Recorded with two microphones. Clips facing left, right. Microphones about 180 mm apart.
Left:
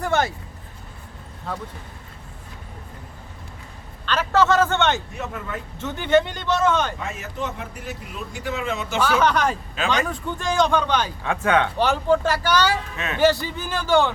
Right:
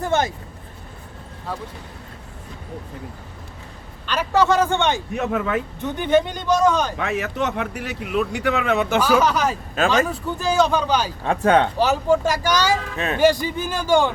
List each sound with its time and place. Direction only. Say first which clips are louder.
0.0 s vehicle: right 1 dB; 20° right (ahead or behind)
4.0 s speech: right 1 dB; 10° right (ahead or behind)
5.1 s speech: right 9 dB; 85° right
5.8 s speech: even; 15° right (ahead or behind)
6.9 s speech: right 7 dB; 75° right (ahead or behind)
9.0 s speech: left 1 dB; 10° right (ahead or behind)
11.2 s speech: right 5 dB; 35° right (ahead or behind)
11.8 s speech: right 1 dB; 5° right (ahead or behind)
13.0 s speech: right 4 dB; 35° right (ahead or behind)
13.2 s speech: right 1 dB; 15° right (ahead or behind)